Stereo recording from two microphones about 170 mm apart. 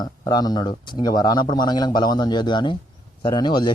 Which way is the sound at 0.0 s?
25° left (ahead or behind).